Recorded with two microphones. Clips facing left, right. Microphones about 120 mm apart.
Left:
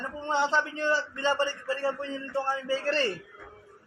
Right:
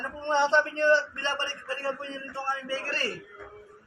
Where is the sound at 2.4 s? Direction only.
25° left (ahead or behind).